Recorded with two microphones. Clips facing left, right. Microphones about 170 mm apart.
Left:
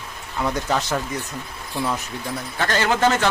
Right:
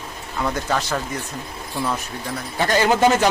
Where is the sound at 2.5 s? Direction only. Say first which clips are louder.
Right 4 dB; 15° right (ahead or behind).